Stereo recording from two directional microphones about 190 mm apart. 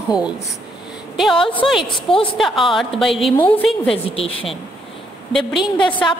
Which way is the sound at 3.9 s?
30° left (ahead or behind).